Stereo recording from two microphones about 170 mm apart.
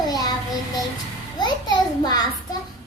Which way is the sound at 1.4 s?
25° left (ahead or behind).